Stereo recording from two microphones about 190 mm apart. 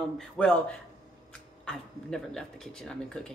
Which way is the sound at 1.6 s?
5° left (ahead or behind).